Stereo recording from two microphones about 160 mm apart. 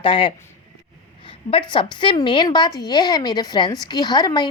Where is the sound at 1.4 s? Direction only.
35° left (ahead or behind).